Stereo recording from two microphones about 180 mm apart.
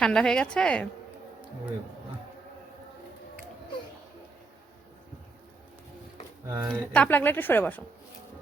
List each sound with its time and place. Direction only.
0.0 s a woman's voice: 5° left (ahead or behind)
6.5 s speech: 20° right (ahead or behind)
6.9 s a woman's voice: 10° left (ahead or behind)